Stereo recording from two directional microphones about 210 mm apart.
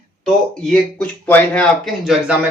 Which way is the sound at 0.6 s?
5° left (ahead or behind).